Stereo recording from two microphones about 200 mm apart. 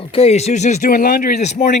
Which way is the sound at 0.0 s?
30° left (ahead or behind).